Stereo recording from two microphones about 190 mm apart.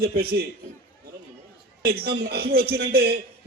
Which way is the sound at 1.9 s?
55° right (ahead or behind).